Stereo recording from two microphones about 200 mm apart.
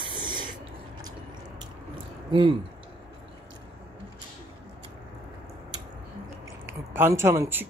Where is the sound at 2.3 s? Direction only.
25° right (ahead or behind).